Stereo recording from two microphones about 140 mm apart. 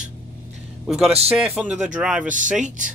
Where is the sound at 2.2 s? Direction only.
70° right (ahead or behind).